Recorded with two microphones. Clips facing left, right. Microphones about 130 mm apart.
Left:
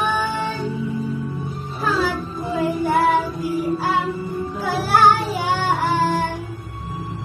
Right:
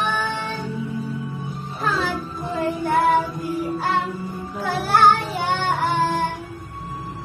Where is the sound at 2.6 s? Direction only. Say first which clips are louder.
Left 2 dB; 5° left (ahead or behind).